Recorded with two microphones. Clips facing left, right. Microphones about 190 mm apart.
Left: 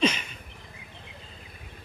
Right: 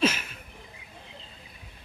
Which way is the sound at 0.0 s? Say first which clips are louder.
Even; 5° right (ahead or behind).